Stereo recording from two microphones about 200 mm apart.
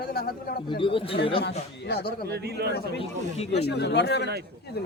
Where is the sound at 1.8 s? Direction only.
55° left (ahead or behind).